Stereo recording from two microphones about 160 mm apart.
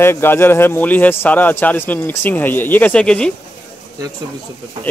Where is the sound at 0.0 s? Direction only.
15° left (ahead or behind).